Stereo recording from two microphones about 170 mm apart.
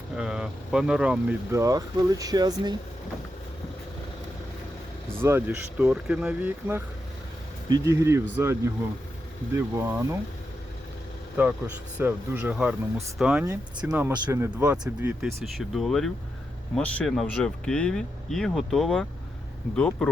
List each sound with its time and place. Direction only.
0.2 s speech: 5° right (ahead or behind)
1.5 s speech: 20° right (ahead or behind)
5.2 s speech: 10° right (ahead or behind)
11.3 s speech: 10° right (ahead or behind)
13.4 s speech: 15° right (ahead or behind)
15.5 s speech: centre (ahead or behind)